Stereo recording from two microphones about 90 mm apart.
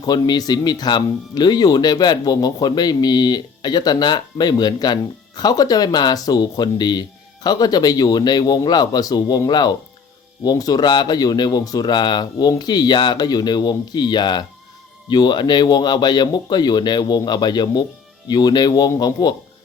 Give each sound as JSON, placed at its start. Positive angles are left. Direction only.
{"t": 0.0, "sound": "speech", "side_deg": 50}